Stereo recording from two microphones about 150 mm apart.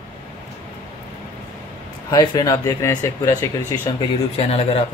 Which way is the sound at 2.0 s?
25° left (ahead or behind).